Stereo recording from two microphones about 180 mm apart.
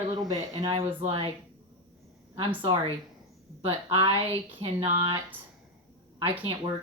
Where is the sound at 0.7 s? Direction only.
30° right (ahead or behind).